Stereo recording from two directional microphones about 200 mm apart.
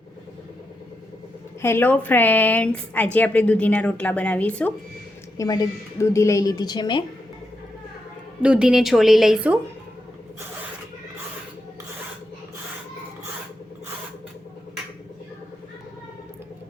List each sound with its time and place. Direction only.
1.6 s a woman's voice: 10° left (ahead or behind)
5.4 s a woman's voice: 15° left (ahead or behind)
8.4 s a woman's voice: 5° right (ahead or behind)